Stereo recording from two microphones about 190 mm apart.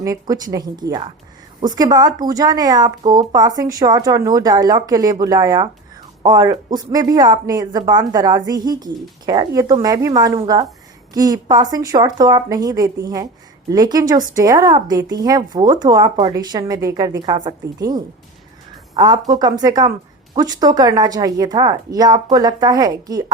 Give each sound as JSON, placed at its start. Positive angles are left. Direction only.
{"t": 0.0, "sound": "speech", "side_deg": -20}